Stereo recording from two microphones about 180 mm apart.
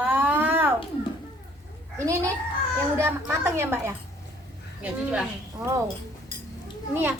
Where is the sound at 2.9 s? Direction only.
15° right (ahead or behind).